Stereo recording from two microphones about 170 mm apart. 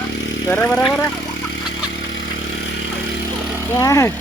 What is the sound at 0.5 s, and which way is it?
Speech, 10° left (ahead or behind).